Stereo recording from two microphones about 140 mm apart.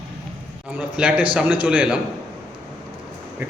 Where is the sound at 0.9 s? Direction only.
10° right (ahead or behind).